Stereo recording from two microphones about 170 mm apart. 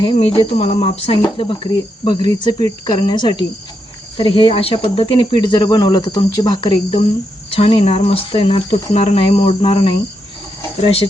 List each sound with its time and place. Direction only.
0.0 s speech: 30° left (ahead or behind)